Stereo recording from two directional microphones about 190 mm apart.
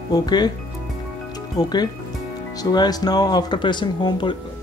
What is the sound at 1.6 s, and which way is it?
Speech, 20° left (ahead or behind).